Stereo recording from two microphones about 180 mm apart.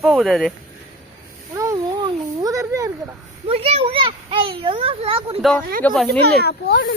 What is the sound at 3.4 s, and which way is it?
A child's voice, 30° right (ahead or behind).